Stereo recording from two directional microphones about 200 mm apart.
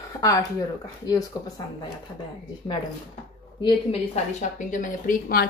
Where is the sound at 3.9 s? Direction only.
40° left (ahead or behind).